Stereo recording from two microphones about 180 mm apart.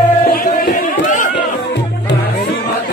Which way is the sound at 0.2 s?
50° left (ahead or behind).